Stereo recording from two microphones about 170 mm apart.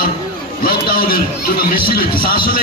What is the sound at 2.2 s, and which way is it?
Speech, 60° left (ahead or behind).